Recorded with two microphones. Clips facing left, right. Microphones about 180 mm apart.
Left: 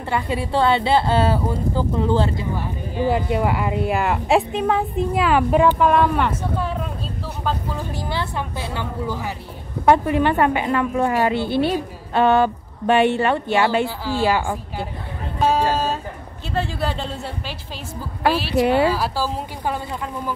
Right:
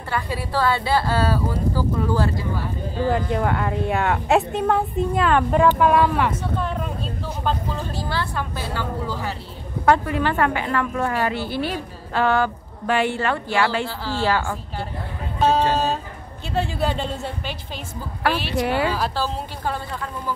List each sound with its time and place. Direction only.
0.1 s a woman's voice: 20° left (ahead or behind)
3.1 s a woman's voice: 10° left (ahead or behind)
7.9 s a woman's voice: 20° left (ahead or behind)
15.4 s music: 10° left (ahead or behind)
16.5 s a woman's voice: centre (ahead or behind)
18.6 s a woman's voice: 25° left (ahead or behind)
18.9 s a woman's voice: 5° left (ahead or behind)